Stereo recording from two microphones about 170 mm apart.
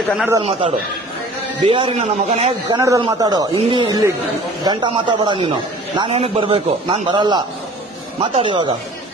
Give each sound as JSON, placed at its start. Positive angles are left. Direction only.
{"t": 0.4, "sound": "a man's voice", "side_deg": -40}
{"t": 2.7, "sound": "a man's voice", "side_deg": -20}